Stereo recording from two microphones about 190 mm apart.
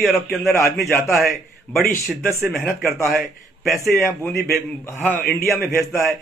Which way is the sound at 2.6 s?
15° left (ahead or behind).